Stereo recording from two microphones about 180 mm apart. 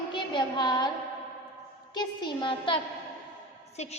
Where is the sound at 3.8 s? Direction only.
40° left (ahead or behind).